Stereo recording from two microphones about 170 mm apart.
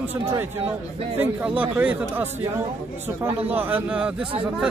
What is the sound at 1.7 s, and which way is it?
Speech, 10° right (ahead or behind).